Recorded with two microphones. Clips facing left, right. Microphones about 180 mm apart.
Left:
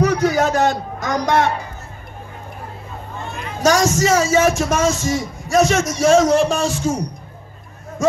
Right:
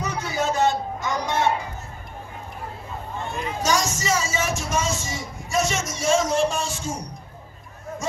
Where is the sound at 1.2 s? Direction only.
70° left (ahead or behind).